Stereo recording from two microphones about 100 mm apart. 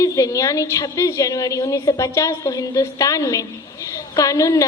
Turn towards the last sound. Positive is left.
turn(degrees=35)  # may be behind; listen again after turning